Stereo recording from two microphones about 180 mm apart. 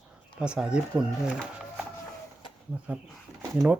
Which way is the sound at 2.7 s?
10° right (ahead or behind).